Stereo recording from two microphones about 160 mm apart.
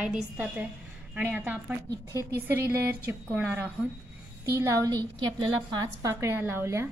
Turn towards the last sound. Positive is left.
turn(degrees=-15)  # may be behind; listen again after turning